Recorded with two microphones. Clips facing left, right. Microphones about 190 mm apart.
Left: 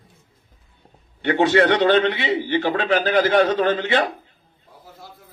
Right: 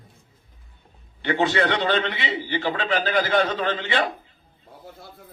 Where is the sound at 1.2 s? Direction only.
45° left (ahead or behind).